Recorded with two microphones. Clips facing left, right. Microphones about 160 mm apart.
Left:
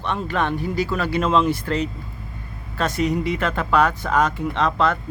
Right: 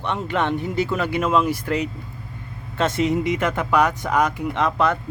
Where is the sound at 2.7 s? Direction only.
25° right (ahead or behind).